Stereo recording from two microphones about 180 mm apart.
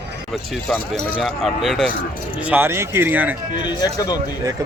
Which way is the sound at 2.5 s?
10° right (ahead or behind).